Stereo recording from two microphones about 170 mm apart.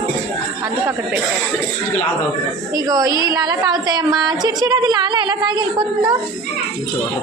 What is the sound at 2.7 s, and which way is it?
A woman's voice, 20° right (ahead or behind).